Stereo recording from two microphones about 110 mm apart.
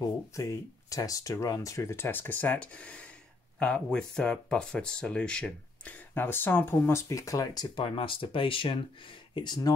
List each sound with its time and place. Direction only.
0.4 s speech: 30° left (ahead or behind); by 8.7 s 50° left (ahead or behind)
9.3 s speech: 40° left (ahead or behind)